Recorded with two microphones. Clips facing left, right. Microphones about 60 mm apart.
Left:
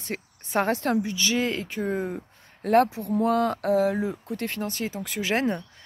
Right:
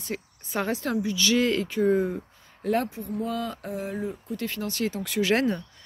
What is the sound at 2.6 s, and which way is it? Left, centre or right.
Speech, left.